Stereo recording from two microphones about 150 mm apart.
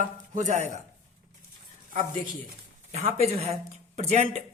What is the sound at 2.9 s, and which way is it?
Speech, 45° right (ahead or behind).